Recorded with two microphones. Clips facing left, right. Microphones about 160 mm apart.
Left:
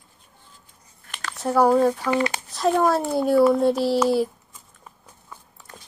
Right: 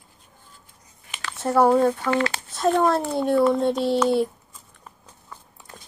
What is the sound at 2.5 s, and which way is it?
Speech, centre (ahead or behind).